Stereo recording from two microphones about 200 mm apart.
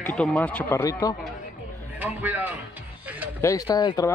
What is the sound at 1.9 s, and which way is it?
Speech, 10° right (ahead or behind).